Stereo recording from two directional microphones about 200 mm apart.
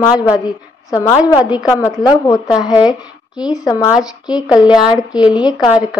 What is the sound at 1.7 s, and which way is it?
Speech, 15° left (ahead or behind).